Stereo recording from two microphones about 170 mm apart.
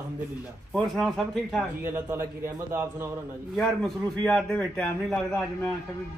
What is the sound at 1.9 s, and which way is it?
A man's voice, 15° right (ahead or behind).